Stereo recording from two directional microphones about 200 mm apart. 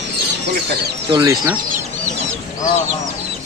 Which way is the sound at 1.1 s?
15° right (ahead or behind).